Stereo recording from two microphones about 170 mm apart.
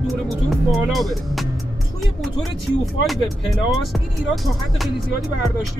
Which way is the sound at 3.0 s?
Centre (ahead or behind).